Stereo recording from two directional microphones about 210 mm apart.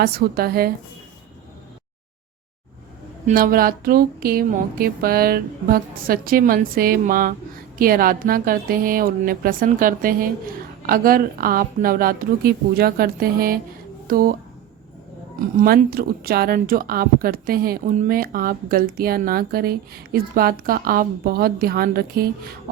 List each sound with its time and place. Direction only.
0.0 s speech: 45° right (ahead or behind)
3.2 s speech: 45° right (ahead or behind)
15.6 s speech: 45° right (ahead or behind)